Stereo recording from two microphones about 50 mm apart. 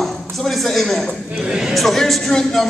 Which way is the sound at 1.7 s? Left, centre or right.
Centre.